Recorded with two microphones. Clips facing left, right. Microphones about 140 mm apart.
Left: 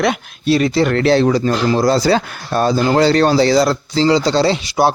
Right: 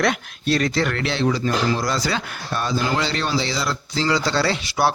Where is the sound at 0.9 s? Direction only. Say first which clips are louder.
Left 9 dB; 35° left (ahead or behind).